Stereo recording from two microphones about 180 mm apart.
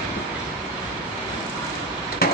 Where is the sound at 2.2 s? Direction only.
60° left (ahead or behind).